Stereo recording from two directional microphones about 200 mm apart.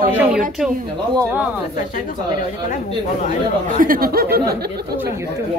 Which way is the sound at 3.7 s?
45° right (ahead or behind).